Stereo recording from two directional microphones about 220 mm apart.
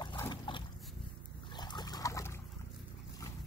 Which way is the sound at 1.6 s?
20° left (ahead or behind).